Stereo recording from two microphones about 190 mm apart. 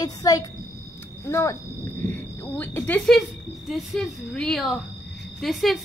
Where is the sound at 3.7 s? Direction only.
Centre (ahead or behind).